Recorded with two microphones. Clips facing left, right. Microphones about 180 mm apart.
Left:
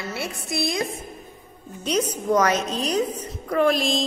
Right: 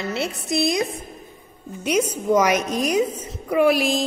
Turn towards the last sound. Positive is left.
turn(degrees=-10)  # may be behind; listen again after turning